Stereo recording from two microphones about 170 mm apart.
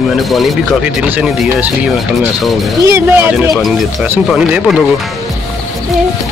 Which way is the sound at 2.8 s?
15° right (ahead or behind).